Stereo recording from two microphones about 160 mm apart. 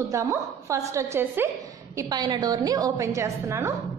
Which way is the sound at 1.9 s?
25° right (ahead or behind).